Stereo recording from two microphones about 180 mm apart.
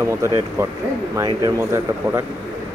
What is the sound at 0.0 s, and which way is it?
Speech, 15° right (ahead or behind).